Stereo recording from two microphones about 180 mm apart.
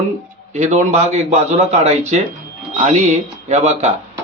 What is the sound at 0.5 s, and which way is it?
A man's voice, 40° right (ahead or behind).